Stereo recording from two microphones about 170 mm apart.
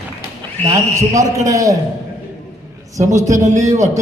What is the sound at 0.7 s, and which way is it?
A man's voice, 20° right (ahead or behind).